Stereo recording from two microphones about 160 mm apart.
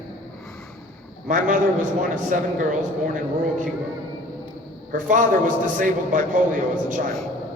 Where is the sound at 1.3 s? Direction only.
55° right (ahead or behind).